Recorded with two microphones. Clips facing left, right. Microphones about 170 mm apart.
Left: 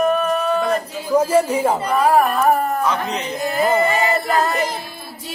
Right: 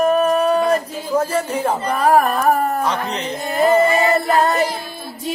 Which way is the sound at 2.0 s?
40° right (ahead or behind).